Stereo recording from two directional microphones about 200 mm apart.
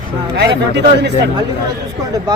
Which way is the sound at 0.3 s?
55° right (ahead or behind).